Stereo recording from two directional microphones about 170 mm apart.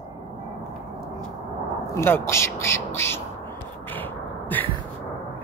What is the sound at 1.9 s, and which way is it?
Speech, 15° left (ahead or behind).